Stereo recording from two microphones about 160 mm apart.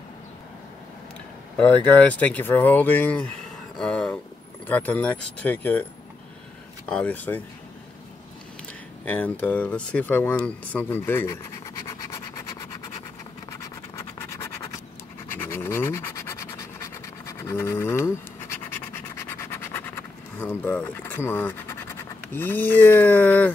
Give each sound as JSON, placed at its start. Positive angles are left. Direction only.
{"t": 2.0, "sound": "speech", "side_deg": 10}
{"t": 6.9, "sound": "speech", "side_deg": 10}
{"t": 9.0, "sound": "speech", "side_deg": 10}
{"t": 13.5, "sound": "scratch", "side_deg": 20}